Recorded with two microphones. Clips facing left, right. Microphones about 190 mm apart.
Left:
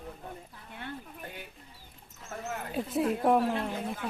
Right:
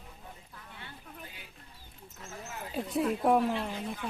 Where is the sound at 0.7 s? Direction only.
55° left (ahead or behind).